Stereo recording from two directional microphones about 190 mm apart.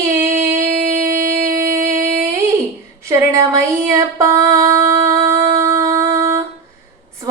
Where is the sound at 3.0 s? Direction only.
15° right (ahead or behind).